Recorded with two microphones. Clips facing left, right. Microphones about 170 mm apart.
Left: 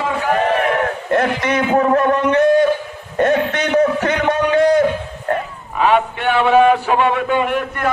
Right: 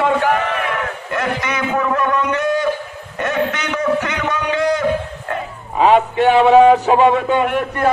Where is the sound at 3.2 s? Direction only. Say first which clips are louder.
Left 4 dB; 45° left (ahead or behind).